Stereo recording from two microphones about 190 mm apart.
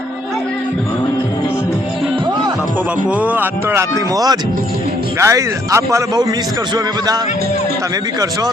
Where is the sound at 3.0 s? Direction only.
10° right (ahead or behind).